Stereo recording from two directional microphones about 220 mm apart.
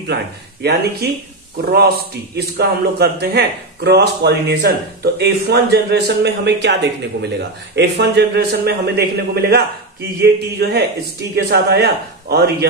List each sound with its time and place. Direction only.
0.0 s a man's voice: 45° right (ahead or behind)